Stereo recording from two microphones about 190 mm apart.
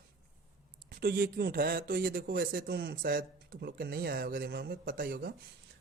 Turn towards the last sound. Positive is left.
turn(degrees=-55)  # may be behind; listen again after turning